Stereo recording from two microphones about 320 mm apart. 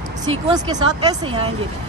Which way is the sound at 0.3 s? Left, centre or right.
Centre.